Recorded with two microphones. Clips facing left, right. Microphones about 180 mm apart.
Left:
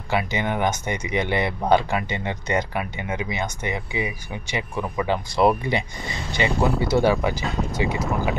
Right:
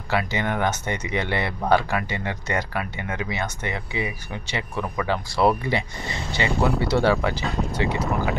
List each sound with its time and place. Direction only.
0.1 s speech: 15° left (ahead or behind)